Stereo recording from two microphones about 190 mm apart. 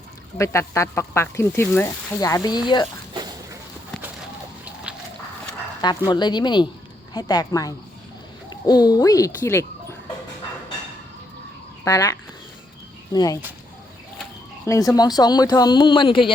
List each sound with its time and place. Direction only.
0.3 s speech: 15° left (ahead or behind)
3.2 s a sound: 20° right (ahead or behind)
4.6 s a sound: 5° right (ahead or behind)
6.1 s speech: 25° left (ahead or behind)
11.9 s speech: 15° left (ahead or behind)
13.1 s speech: 20° left (ahead or behind)
14.7 s speech: 20° left (ahead or behind)